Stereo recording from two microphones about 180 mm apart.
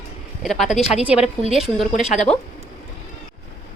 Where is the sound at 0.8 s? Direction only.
35° left (ahead or behind).